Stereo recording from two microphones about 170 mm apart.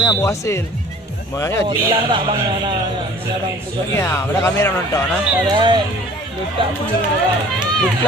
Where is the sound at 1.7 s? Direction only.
30° right (ahead or behind).